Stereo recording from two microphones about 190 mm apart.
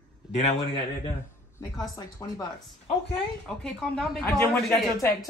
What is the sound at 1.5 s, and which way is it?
Speech, 20° left (ahead or behind).